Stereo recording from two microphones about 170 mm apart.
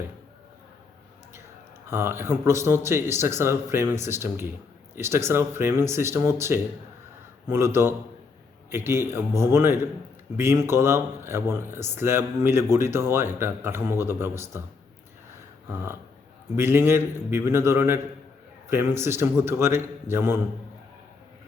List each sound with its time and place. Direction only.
1.9 s a man's voice: 15° right (ahead or behind)
16.6 s a man's voice: 15° right (ahead or behind)